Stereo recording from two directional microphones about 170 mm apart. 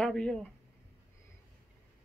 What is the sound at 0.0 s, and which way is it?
Speech, 5° left (ahead or behind).